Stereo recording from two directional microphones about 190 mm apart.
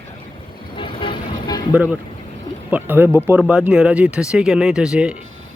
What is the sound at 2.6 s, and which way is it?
Speech, 10° right (ahead or behind).